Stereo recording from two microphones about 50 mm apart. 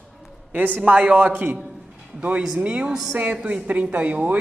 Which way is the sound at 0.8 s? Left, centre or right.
Right.